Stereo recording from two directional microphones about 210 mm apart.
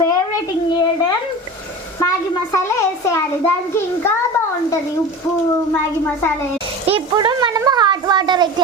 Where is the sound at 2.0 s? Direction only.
15° left (ahead or behind).